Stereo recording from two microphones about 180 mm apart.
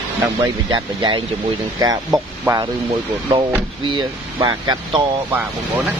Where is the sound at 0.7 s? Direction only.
25° right (ahead or behind).